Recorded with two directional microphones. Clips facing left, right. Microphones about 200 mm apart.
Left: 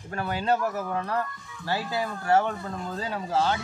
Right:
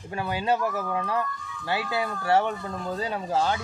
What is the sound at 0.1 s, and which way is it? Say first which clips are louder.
Speech: even; 15° right (ahead or behind).